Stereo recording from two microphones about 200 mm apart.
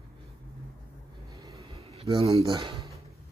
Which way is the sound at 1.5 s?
30° right (ahead or behind).